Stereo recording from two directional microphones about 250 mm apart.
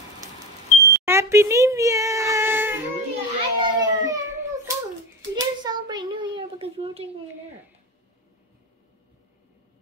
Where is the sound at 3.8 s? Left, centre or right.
Centre.